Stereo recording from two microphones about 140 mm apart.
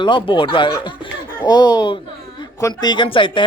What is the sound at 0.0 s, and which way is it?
Speech, 35° left (ahead or behind).